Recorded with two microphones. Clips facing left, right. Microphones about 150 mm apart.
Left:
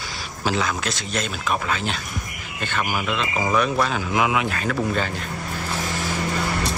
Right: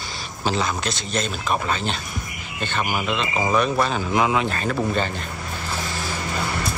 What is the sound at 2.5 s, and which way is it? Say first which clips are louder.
Speech: right 1 dB; 20° right (ahead or behind).